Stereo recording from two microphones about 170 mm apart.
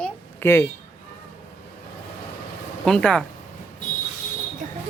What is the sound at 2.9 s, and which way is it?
Speech, 5° left (ahead or behind).